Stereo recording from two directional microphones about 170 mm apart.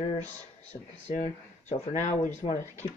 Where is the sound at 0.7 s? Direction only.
40° left (ahead or behind).